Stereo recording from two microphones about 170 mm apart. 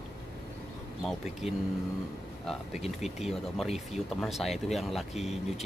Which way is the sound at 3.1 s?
Centre (ahead or behind).